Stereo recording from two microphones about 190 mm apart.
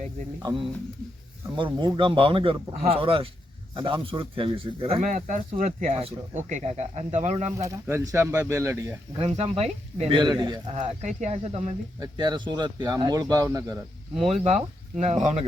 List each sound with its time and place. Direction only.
1.5 s speech: 25° right (ahead or behind)
5.0 s speech: 40° right (ahead or behind)
7.5 s speech: 15° right (ahead or behind)
9.1 s speech: 30° right (ahead or behind)
11.9 s speech: 20° right (ahead or behind)
14.3 s speech: 35° right (ahead or behind)